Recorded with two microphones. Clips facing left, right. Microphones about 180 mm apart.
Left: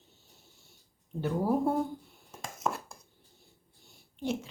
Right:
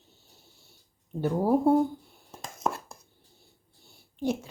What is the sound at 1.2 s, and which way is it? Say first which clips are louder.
Speech: right 5 dB; 35° right (ahead or behind).